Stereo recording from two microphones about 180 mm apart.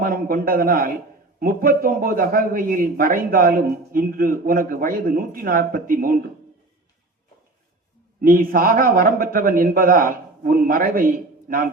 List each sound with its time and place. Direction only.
0.0 s a man's voice: 55° right (ahead or behind)
8.2 s a man's voice: 55° right (ahead or behind)